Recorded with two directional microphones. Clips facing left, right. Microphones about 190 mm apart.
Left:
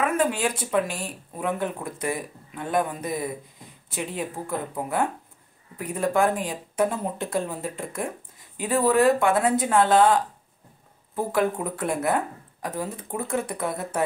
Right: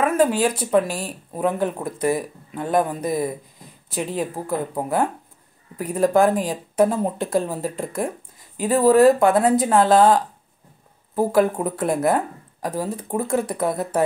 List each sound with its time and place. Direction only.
0.0 s speech: 35° right (ahead or behind)